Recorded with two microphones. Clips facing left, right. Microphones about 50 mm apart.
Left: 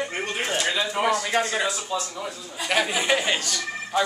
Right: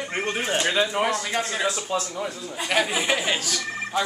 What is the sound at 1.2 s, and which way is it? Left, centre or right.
Speech, centre.